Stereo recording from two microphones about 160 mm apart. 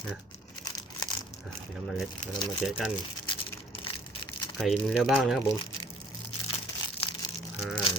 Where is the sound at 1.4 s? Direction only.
Centre (ahead or behind).